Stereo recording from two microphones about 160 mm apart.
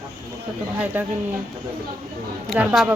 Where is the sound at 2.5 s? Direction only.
Centre (ahead or behind).